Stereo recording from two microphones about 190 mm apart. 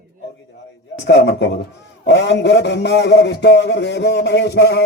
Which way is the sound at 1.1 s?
65° left (ahead or behind).